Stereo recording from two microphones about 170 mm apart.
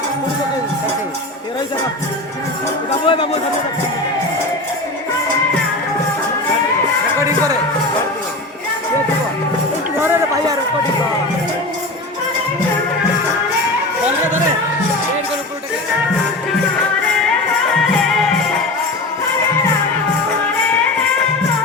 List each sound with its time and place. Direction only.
3.1 s speech: 30° left (ahead or behind)
7.3 s music: 20° right (ahead or behind)
10.0 s run: 15° right (ahead or behind)